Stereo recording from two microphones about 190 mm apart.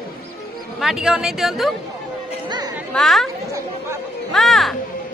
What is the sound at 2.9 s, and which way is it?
Speech, centre (ahead or behind).